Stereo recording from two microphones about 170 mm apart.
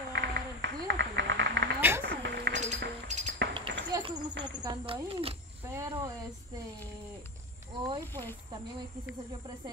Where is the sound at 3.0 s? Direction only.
45° right (ahead or behind).